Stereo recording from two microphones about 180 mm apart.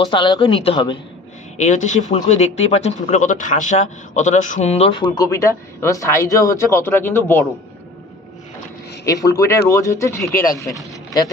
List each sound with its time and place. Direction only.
0.1 s speech: 25° left (ahead or behind)
1.6 s speech: 40° left (ahead or behind); by 7.4 s 10° left (ahead or behind)
9.0 s speech: 20° left (ahead or behind)